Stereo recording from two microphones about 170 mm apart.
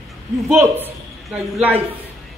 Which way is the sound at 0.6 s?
10° right (ahead or behind).